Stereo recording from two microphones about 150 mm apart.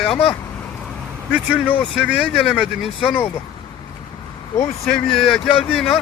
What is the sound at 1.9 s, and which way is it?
Speech, 5° right (ahead or behind).